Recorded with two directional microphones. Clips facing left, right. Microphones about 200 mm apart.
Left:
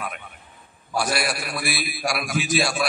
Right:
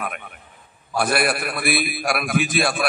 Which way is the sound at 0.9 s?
55° right (ahead or behind).